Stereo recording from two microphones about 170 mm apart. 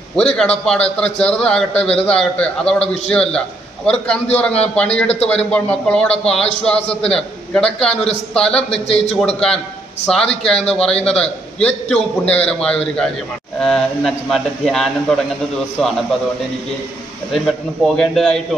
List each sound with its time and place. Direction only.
0.1 s a man's voice: 5° left (ahead or behind)
1.7 s a man's voice: 35° left (ahead or behind)
2.0 s a man's voice: 5° left (ahead or behind)
8.8 s a man's voice: 35° left (ahead or behind)
10.0 s a man's voice: 5° left (ahead or behind)
17.3 s a man's voice: centre (ahead or behind)